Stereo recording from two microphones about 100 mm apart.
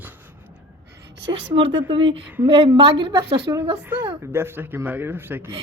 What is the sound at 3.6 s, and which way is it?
Speech, 25° right (ahead or behind).